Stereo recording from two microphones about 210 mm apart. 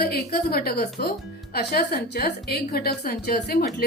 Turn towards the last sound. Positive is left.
turn(degrees=50)  # may be behind; listen again after turning